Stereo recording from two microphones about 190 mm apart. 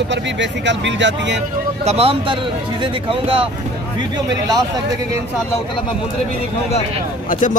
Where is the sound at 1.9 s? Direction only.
30° right (ahead or behind).